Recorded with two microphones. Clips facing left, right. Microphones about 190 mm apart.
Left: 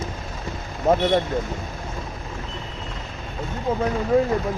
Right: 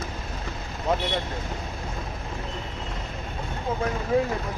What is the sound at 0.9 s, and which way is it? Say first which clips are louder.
Speech: left 7 dB; 50° left (ahead or behind).